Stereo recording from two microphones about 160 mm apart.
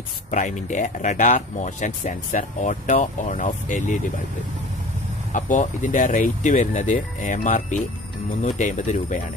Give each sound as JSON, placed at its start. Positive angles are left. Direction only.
{"t": 0.3, "sound": "speech", "side_deg": 50}
{"t": 5.3, "sound": "speech", "side_deg": 50}